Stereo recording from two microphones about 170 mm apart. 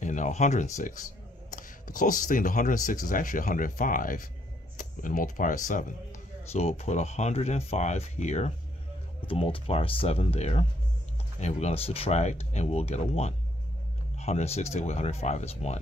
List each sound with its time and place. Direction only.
0.0 s speech: 45° left (ahead or behind)
6.5 s speech: 40° left (ahead or behind)